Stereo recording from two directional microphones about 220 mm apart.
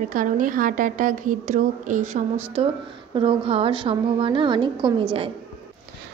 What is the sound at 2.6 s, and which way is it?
Speech, 25° right (ahead or behind).